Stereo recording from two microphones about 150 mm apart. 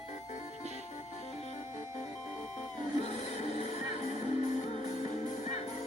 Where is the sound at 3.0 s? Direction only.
50° left (ahead or behind).